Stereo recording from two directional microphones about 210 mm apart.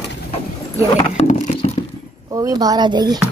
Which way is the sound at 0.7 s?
30° left (ahead or behind).